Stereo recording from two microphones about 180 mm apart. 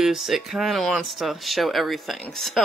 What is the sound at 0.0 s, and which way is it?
Speech, centre (ahead or behind).